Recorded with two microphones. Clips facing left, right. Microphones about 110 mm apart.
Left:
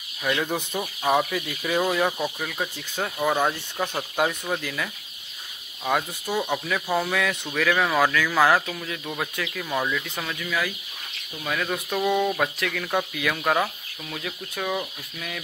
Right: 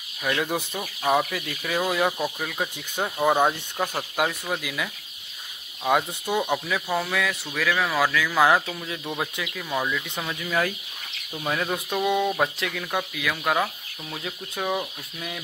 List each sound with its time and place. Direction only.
0.2 s speech: centre (ahead or behind)
3.0 s speech: 15° right (ahead or behind)
5.9 s speech: 15° right (ahead or behind)
9.7 s speech: centre (ahead or behind)
10.2 s speech: 25° right (ahead or behind)
11.9 s speech: 10° right (ahead or behind)
12.4 s speech: 25° right (ahead or behind)
12.7 s speech: centre (ahead or behind)
14.1 s speech: 20° right (ahead or behind)